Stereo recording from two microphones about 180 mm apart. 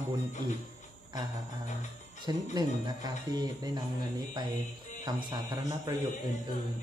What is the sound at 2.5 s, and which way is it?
Speech, 25° right (ahead or behind).